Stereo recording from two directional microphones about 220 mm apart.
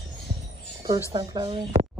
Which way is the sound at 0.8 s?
15° right (ahead or behind).